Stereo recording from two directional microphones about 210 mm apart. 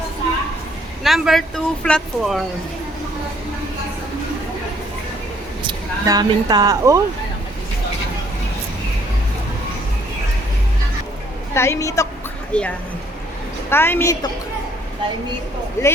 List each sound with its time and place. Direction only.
1.0 s speech: centre (ahead or behind)
5.6 s speech: 20° right (ahead or behind)
11.5 s a woman's voice: 10° left (ahead or behind)
15.8 s a woman's voice: 15° left (ahead or behind)